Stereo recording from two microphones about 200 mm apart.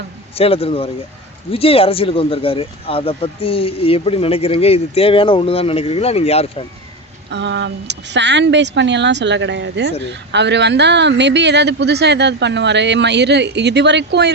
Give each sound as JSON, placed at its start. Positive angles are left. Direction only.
{"t": 0.3, "sound": "speech", "side_deg": 30}
{"t": 7.3, "sound": "speech", "side_deg": -65}